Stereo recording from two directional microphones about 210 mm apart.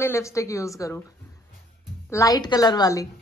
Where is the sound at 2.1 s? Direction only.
15° left (ahead or behind).